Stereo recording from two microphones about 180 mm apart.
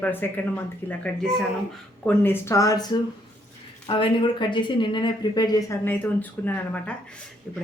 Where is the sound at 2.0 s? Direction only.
10° left (ahead or behind).